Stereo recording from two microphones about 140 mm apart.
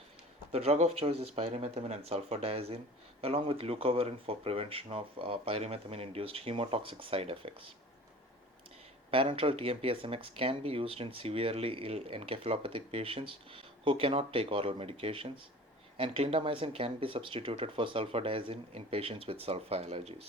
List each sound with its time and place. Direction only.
0.5 s speech: 50° right (ahead or behind)
9.0 s speech: 40° right (ahead or behind)